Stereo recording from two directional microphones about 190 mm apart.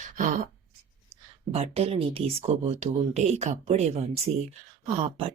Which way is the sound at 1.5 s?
35° right (ahead or behind).